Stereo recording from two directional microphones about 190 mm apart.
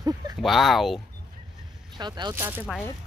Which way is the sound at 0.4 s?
Centre (ahead or behind).